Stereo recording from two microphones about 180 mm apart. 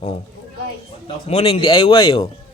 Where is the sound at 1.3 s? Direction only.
30° left (ahead or behind).